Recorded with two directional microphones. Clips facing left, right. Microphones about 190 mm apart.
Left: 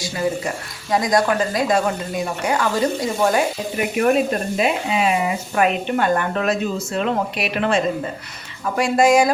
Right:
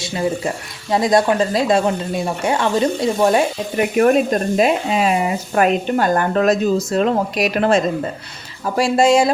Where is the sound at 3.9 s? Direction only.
40° right (ahead or behind).